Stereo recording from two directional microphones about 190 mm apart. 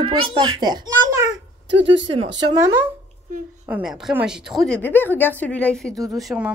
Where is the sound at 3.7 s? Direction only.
Centre (ahead or behind).